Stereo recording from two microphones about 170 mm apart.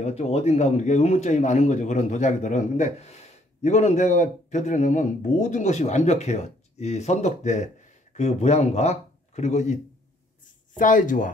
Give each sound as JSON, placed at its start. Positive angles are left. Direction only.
{"t": 0.0, "sound": "speech", "side_deg": 40}
{"t": 10.8, "sound": "speech", "side_deg": 50}